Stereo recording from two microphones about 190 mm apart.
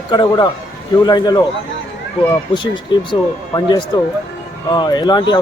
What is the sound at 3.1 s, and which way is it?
Speech, 20° left (ahead or behind).